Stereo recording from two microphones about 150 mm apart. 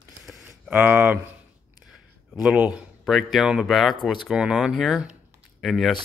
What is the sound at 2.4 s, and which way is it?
Speech, 10° right (ahead or behind).